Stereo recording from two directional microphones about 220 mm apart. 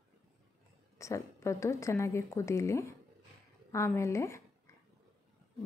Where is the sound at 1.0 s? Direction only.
15° left (ahead or behind).